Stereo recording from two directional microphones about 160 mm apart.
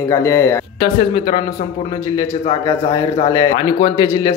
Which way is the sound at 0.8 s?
35° left (ahead or behind).